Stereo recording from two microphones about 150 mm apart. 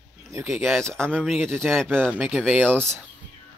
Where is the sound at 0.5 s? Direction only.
Centre (ahead or behind).